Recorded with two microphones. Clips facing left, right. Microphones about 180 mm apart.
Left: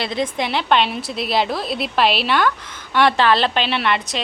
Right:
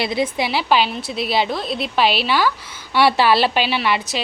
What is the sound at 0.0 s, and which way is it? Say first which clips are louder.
A woman's voice: right 2 dB; 10° right (ahead or behind).